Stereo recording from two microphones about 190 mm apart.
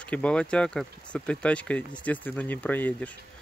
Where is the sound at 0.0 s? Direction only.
5° left (ahead or behind).